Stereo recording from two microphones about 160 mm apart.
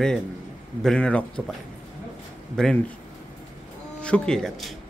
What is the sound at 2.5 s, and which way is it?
Speech, 5° left (ahead or behind).